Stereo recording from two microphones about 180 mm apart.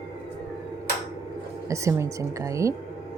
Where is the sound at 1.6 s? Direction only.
15° right (ahead or behind).